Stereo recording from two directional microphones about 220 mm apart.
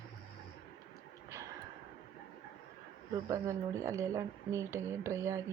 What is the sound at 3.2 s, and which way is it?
Speech, 15° right (ahead or behind).